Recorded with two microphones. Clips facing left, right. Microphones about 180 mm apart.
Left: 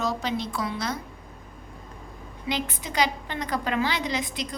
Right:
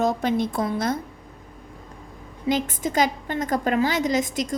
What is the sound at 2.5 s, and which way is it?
A woman's voice, 45° right (ahead or behind).